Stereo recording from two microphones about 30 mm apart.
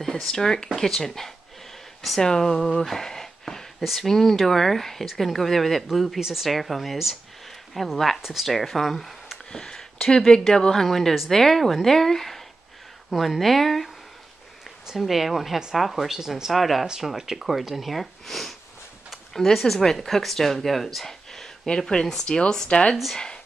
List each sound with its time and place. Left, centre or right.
0.3 s speech: left
3.1 s a sound: centre
3.8 s speech: centre
6.1 s speech: centre
6.4 s speech: centre
9.5 s a sound: left
10.1 s speech: left; by 13.8 s centre
15.0 s speech: centre
16.1 s speech: centre
16.5 s speech: centre
17.9 s speech: centre
19.5 s speech: centre
21.6 s speech: left
23.1 s speech: left